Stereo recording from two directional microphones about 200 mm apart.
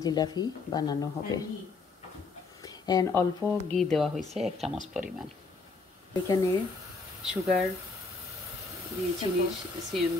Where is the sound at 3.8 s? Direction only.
Centre (ahead or behind).